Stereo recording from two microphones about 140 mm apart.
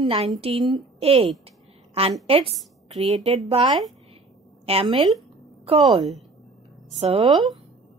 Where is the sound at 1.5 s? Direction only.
45° right (ahead or behind).